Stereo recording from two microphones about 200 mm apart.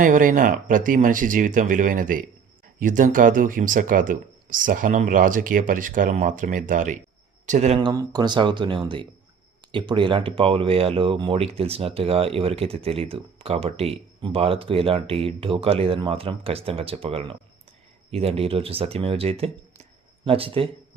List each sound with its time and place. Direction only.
0.0 s speech: 40° right (ahead or behind)
7.8 s speech: 20° right (ahead or behind)